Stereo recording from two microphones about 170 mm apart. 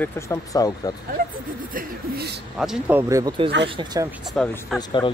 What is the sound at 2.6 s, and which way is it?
Speech, 5° right (ahead or behind).